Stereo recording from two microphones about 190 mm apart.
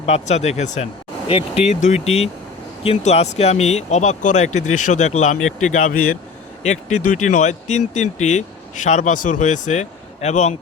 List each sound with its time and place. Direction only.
0.0 s speech: 35° left (ahead or behind)